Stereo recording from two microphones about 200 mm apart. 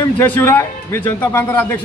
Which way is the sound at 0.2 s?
10° left (ahead or behind).